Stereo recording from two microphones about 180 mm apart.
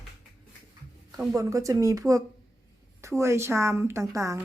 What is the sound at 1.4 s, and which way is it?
A woman's voice, 15° right (ahead or behind).